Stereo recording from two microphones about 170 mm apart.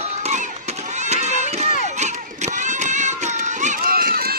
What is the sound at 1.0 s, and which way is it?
Run, 40° right (ahead or behind).